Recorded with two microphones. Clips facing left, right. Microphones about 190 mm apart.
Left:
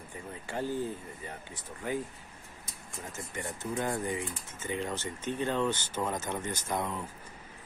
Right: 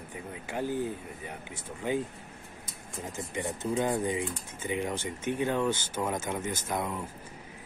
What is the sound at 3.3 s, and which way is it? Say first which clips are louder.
Speech: right 5 dB; 20° right (ahead or behind).